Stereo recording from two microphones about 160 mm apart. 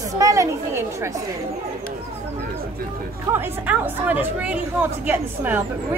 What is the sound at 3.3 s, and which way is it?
A woman's voice, 10° right (ahead or behind).